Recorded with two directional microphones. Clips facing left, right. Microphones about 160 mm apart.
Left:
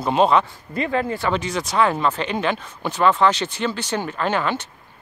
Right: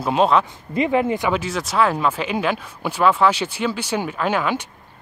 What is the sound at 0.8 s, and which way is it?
Speech, 15° right (ahead or behind).